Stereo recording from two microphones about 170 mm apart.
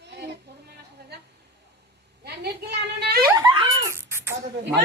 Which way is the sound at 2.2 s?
70° right (ahead or behind).